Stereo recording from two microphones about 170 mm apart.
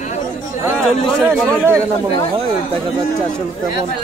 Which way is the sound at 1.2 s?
10° right (ahead or behind).